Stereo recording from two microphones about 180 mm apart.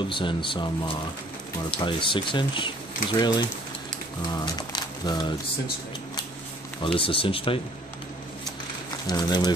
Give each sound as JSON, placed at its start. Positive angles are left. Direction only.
{"t": 0.1, "sound": "speech", "side_deg": 25}
{"t": 6.8, "sound": "speech", "side_deg": 30}
{"t": 9.0, "sound": "speech", "side_deg": 25}